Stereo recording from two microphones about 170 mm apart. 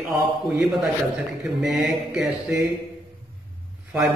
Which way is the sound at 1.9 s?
5° right (ahead or behind).